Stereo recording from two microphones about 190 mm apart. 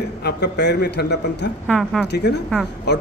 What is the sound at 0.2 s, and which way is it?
A man's voice, 60° left (ahead or behind).